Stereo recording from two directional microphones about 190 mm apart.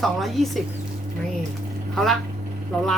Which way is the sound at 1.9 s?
Centre (ahead or behind).